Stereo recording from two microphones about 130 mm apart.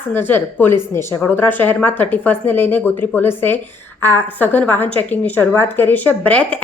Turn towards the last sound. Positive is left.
turn(degrees=10)  # may be behind; listen again after turning